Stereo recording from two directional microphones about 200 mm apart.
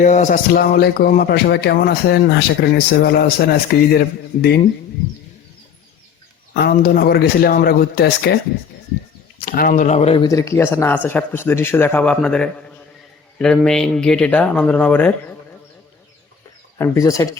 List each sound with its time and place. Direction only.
0.0 s speech: 40° left (ahead or behind)
6.5 s speech: 50° left (ahead or behind)
9.4 s speech: 45° left (ahead or behind)
10.2 s speech: 15° left (ahead or behind)
16.7 s speech: 15° left (ahead or behind)